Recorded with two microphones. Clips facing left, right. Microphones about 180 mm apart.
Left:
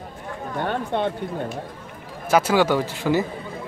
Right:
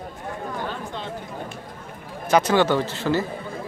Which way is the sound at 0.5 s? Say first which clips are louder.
Left 7 dB; 60° left (ahead or behind).